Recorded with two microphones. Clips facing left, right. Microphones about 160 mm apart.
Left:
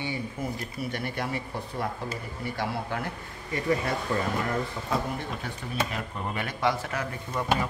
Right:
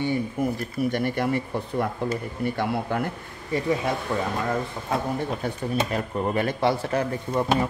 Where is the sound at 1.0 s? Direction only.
50° right (ahead or behind).